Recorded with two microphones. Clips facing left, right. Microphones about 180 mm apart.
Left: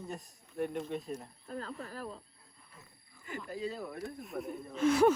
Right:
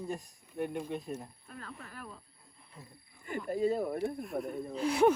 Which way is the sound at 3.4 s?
50° right (ahead or behind).